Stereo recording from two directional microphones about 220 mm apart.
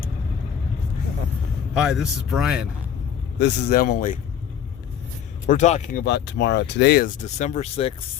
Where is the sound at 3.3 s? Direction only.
50° left (ahead or behind).